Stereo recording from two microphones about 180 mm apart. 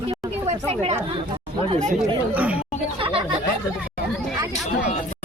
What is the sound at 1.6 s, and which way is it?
Speech, 30° right (ahead or behind).